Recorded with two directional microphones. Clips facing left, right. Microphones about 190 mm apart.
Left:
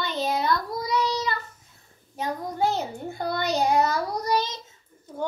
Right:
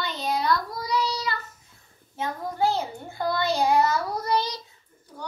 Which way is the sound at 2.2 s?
20° left (ahead or behind).